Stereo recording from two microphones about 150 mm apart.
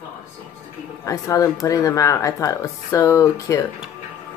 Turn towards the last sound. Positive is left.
turn(degrees=20)  # may be behind; listen again after turning